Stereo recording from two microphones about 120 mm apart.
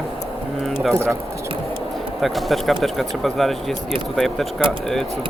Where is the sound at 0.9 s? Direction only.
20° right (ahead or behind).